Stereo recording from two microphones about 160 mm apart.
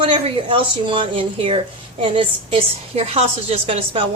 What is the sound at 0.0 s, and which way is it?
Speech, 30° right (ahead or behind).